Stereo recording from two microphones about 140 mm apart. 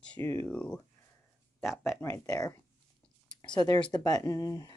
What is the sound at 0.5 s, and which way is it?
Speech, 10° left (ahead or behind).